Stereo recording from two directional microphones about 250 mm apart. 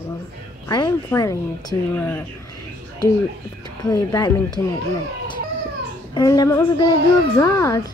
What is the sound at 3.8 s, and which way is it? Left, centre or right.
Speech, centre.